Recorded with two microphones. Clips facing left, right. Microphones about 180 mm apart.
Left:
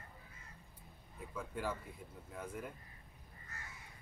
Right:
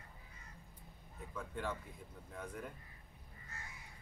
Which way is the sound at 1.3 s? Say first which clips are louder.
Left 1 dB; 5° left (ahead or behind).